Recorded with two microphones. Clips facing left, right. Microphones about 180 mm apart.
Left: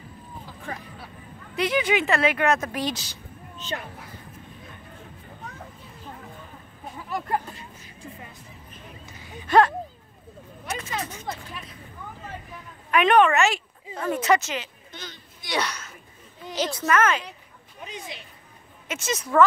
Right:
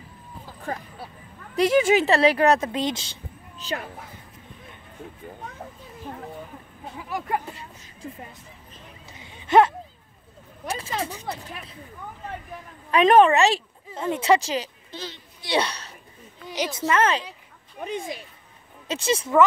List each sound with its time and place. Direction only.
1.6 s a woman's voice: 45° right (ahead or behind); by 3.2 s 25° right (ahead or behind)
3.5 s speech: 35° right (ahead or behind)
7.0 s speech: 5° right (ahead or behind)
9.1 s a sound: 25° right (ahead or behind)
10.7 s speech: 30° right (ahead or behind)
12.9 s a woman's voice: 35° right (ahead or behind)
13.9 s speech: 20° right (ahead or behind)
16.4 s a sound: 10° right (ahead or behind)
16.7 s speech: 25° right (ahead or behind)
17.8 s speech: 55° right (ahead or behind)
18.9 s a woman's voice: 30° right (ahead or behind)